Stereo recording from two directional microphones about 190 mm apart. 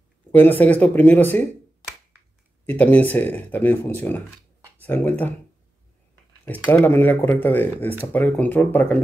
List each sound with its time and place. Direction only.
0.3 s speech: 10° left (ahead or behind)
2.6 s speech: 10° left (ahead or behind)
6.4 s speech: 10° left (ahead or behind)